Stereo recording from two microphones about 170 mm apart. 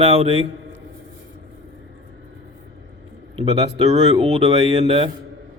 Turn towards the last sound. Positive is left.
turn(degrees=-35)  # may be behind; listen again after turning